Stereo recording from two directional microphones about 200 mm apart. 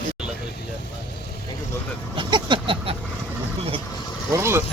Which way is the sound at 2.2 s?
25° right (ahead or behind).